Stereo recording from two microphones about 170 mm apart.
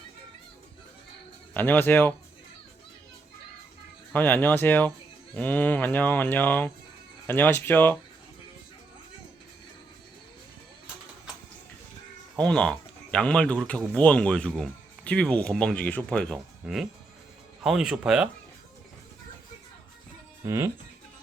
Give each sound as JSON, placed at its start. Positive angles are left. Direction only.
{"t": 1.5, "sound": "speech", "side_deg": 10}
{"t": 4.1, "sound": "speech", "side_deg": 10}
{"t": 12.4, "sound": "speech", "side_deg": 5}
{"t": 20.4, "sound": "speech", "side_deg": -15}